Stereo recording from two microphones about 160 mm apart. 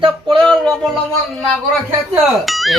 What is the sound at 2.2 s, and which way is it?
Speech, centre (ahead or behind).